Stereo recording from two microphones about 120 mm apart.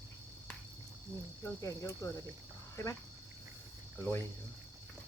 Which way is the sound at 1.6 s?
25° left (ahead or behind).